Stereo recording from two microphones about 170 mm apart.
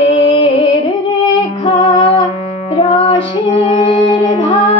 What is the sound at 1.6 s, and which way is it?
Female singing, 30° left (ahead or behind).